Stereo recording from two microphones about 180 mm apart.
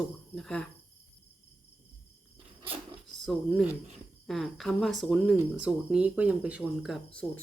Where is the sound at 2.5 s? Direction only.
30° right (ahead or behind).